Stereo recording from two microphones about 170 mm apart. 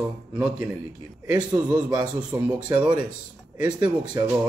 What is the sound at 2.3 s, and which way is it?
Speech, 15° right (ahead or behind).